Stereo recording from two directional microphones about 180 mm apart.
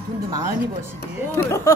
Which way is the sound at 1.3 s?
15° left (ahead or behind).